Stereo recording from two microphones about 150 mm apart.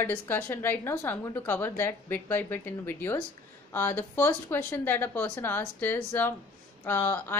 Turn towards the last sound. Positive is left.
turn(degrees=15)  # may be behind; listen again after turning